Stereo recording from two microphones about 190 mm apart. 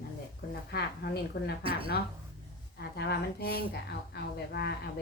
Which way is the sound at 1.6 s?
30° right (ahead or behind).